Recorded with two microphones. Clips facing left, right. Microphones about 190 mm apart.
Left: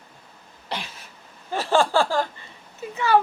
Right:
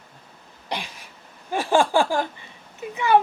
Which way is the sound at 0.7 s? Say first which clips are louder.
Right 2 dB; 15° right (ahead or behind).